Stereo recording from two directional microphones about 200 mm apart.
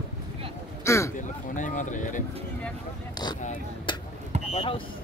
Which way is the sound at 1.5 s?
40° left (ahead or behind).